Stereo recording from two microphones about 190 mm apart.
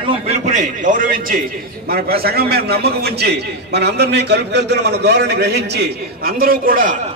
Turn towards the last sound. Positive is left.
turn(degrees=-50)  # may be behind; listen again after turning